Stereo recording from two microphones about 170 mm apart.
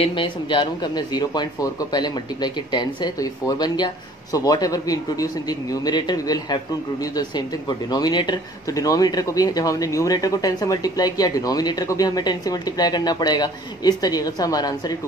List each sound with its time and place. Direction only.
0.0 s speech: 30° left (ahead or behind)